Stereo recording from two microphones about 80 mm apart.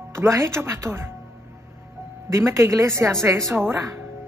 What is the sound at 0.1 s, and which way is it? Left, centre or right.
Speech, right.